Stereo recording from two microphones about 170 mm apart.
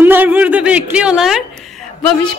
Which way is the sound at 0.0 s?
10° right (ahead or behind).